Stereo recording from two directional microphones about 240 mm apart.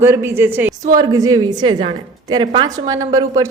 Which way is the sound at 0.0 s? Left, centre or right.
Centre.